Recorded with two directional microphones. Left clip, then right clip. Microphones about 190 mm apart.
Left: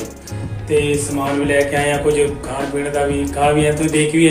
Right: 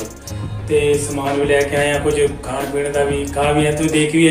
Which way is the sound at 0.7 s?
Centre (ahead or behind).